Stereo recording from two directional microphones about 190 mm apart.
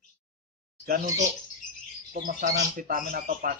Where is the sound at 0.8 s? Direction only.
45° right (ahead or behind).